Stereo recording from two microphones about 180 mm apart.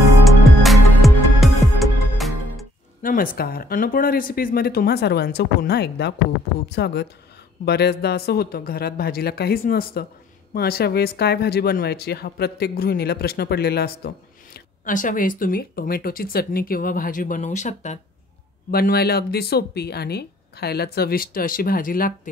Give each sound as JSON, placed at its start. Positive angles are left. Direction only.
{"t": 0.2, "sound": "music", "side_deg": 0}
{"t": 3.0, "sound": "speech", "side_deg": 50}
{"t": 18.7, "sound": "speech", "side_deg": 60}